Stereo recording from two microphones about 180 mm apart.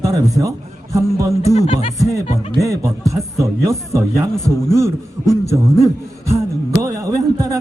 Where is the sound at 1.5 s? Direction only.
35° left (ahead or behind).